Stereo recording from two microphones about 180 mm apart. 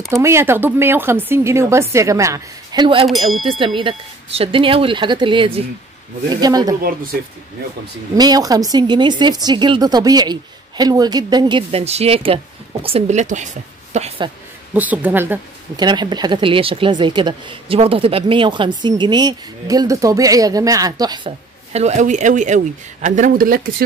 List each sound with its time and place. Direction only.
0.1 s speech: 15° right (ahead or behind)
3.1 s speech: centre (ahead or behind)
3.4 s speech: 30° right (ahead or behind)
6.8 s speech: 55° right (ahead or behind)
8.2 s speech: 20° right (ahead or behind)
14.7 s speech: 10° right (ahead or behind)
15.7 s speech: 25° right (ahead or behind)
21.7 s speech: 40° right (ahead or behind)